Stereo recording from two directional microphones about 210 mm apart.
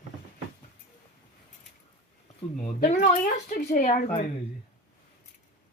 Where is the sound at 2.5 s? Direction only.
40° left (ahead or behind).